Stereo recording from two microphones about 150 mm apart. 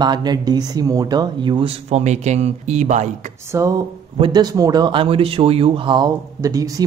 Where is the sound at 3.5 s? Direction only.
20° right (ahead or behind).